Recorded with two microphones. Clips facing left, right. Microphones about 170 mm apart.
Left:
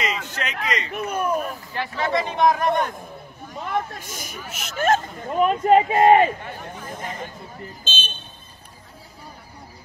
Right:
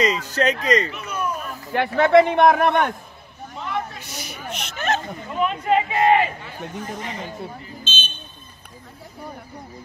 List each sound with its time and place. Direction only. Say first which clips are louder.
0.0 s speech: right 8 dB; 40° right (ahead or behind)
0.9 s speech: left 4 dB; 50° left (ahead or behind)
1.7 s speech: right 10 dB; 60° right (ahead or behind)
3.6 s speech: left 2 dB; 45° left (ahead or behind)
4.5 s speech: right 4 dB; 5° left (ahead or behind)
4.7 s speech: left 5 dB; 45° left (ahead or behind)